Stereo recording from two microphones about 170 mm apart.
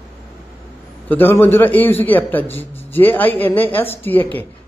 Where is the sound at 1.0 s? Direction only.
10° left (ahead or behind).